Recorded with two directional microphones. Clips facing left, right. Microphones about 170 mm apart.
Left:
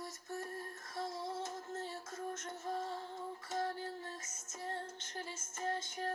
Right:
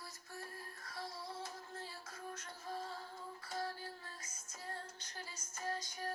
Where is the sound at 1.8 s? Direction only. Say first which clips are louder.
Left 6 dB; 25° left (ahead or behind).